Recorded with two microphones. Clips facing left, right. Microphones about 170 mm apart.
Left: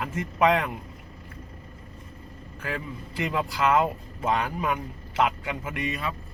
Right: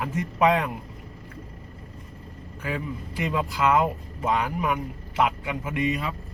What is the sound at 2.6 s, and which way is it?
Speech, 15° right (ahead or behind).